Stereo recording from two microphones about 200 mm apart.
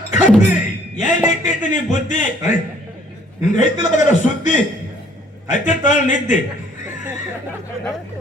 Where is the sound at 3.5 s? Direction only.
40° left (ahead or behind).